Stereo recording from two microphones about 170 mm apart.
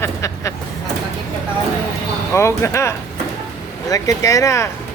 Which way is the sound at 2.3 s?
15° left (ahead or behind).